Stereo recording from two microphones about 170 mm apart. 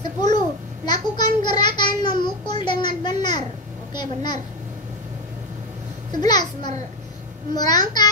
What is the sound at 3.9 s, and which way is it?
Speech, 25° left (ahead or behind).